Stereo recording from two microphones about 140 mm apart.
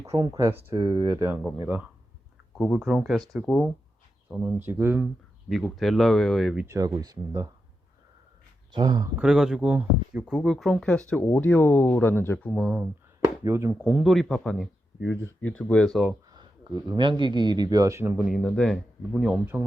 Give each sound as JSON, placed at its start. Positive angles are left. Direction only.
{"t": 0.0, "sound": "speech", "side_deg": -25}
{"t": 5.5, "sound": "speech", "side_deg": 0}
{"t": 6.7, "sound": "speech", "side_deg": -25}
{"t": 8.7, "sound": "speech", "side_deg": -30}
{"t": 9.1, "sound": "speech", "side_deg": -5}
{"t": 12.6, "sound": "speech", "side_deg": -5}
{"t": 13.4, "sound": "speech", "side_deg": -20}
{"t": 14.0, "sound": "speech", "side_deg": 0}
{"t": 16.3, "sound": "speech", "side_deg": -30}
{"t": 18.3, "sound": "speech", "side_deg": 5}